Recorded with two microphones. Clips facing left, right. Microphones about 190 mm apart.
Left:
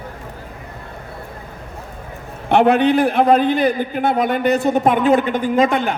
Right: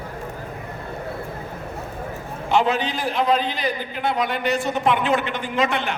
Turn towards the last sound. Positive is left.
turn(degrees=45)  # may be behind; listen again after turning